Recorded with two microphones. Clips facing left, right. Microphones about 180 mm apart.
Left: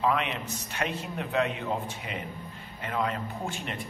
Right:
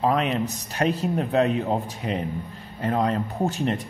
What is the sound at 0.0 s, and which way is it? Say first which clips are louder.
A man's voice: right 6 dB; 40° right (ahead or behind).